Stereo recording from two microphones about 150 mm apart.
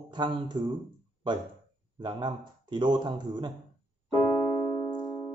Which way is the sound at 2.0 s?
30° right (ahead or behind).